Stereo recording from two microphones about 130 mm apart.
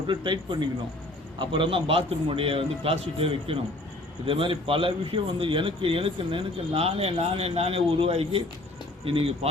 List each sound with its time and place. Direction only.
0.1 s speech: 40° right (ahead or behind)